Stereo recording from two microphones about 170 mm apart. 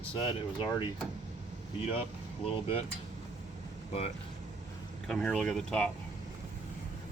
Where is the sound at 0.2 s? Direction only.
30° left (ahead or behind).